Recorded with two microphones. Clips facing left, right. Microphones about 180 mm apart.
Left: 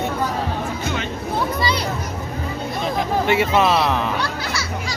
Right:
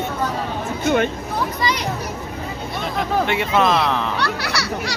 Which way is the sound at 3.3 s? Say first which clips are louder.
Left 3 dB; 5° left (ahead or behind).